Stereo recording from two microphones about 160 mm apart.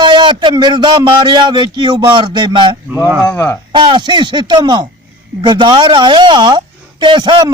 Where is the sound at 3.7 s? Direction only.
30° right (ahead or behind).